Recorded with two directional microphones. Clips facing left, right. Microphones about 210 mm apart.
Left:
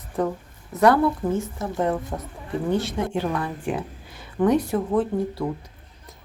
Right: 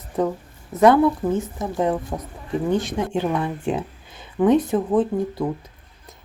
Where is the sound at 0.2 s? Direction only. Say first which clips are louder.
Right 2 dB; 20° right (ahead or behind).